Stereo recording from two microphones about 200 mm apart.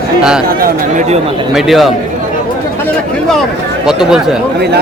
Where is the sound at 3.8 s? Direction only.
5° right (ahead or behind).